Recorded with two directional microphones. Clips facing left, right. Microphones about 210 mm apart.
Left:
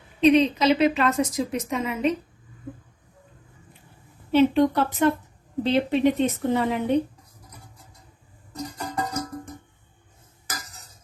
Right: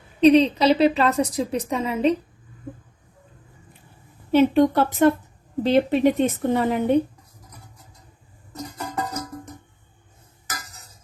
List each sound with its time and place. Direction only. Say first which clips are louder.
0.2 s a woman's voice: right 3 dB; 35° right (ahead or behind)
4.3 s a woman's voice: right 2 dB; 45° right (ahead or behind)